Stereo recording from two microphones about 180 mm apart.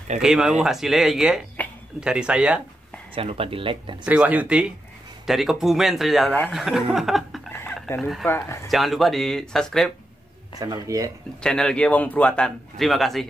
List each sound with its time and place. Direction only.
0.2 s a man's voice: 5° right (ahead or behind)
3.2 s speech: 30° right (ahead or behind)
4.0 s a man's voice: 5° right (ahead or behind)
7.5 s a sound: 10° left (ahead or behind)
8.6 s a man's voice: centre (ahead or behind)
10.6 s speech: 20° right (ahead or behind)
11.4 s a man's voice: 5° left (ahead or behind)